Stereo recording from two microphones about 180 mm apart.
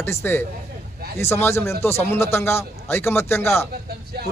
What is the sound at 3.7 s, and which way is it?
Speech, 60° right (ahead or behind).